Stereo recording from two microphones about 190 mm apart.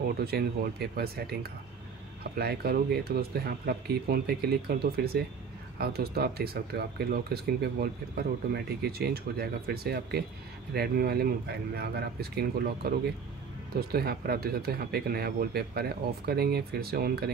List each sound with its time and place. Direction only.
0.2 s speech: 55° right (ahead or behind)